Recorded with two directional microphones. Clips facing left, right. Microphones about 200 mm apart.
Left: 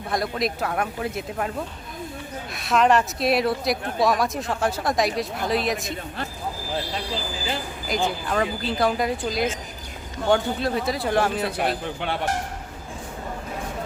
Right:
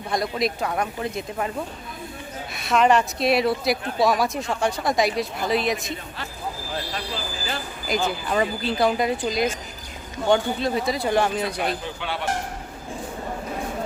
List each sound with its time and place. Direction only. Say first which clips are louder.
0.1 s speech: right 1 dB; centre (ahead or behind)
7.9 s speech: right 1 dB; centre (ahead or behind)
11.9 s speech: left 2 dB; 50° left (ahead or behind)